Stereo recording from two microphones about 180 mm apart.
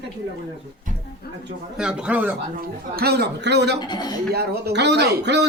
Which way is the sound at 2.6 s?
55° right (ahead or behind).